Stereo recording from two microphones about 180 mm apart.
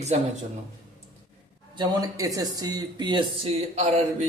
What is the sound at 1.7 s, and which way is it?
Speech, 20° right (ahead or behind).